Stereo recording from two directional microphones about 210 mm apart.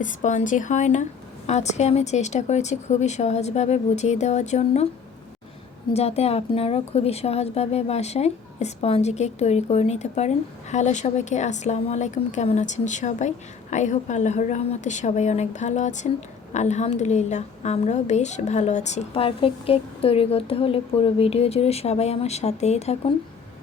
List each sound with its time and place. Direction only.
0.0 s a woman's voice: 35° left (ahead or behind)
5.9 s a woman's voice: 30° left (ahead or behind)